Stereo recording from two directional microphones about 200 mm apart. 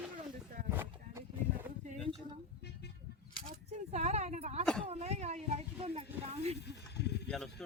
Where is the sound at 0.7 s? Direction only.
10° right (ahead or behind).